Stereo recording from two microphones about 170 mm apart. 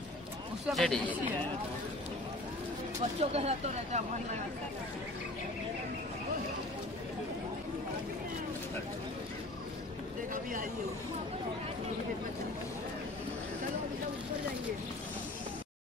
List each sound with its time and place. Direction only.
0.7 s speech: centre (ahead or behind)
3.0 s speech: 40° right (ahead or behind)
10.3 s speech: 55° right (ahead or behind)